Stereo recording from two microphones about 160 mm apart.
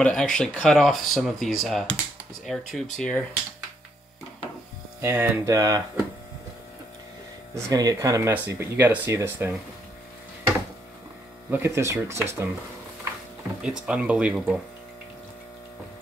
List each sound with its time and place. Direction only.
0.0 s speech: 5° left (ahead or behind)
5.0 s speech: 15° right (ahead or behind)
7.5 s speech: 20° right (ahead or behind)
11.5 s speech: 15° right (ahead or behind)
13.6 s speech: 5° right (ahead or behind)